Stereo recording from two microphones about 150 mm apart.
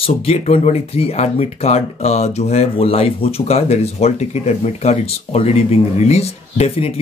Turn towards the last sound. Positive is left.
turn(degrees=40)  # may be behind; listen again after turning